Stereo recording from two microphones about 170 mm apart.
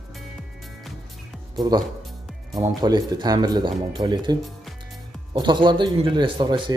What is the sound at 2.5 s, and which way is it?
Speech, 25° right (ahead or behind).